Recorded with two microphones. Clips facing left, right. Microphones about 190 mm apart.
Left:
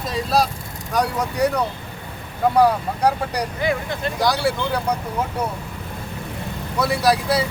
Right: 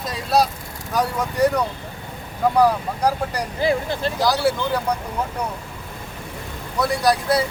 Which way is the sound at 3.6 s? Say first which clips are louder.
Right 5 dB; 30° right (ahead or behind).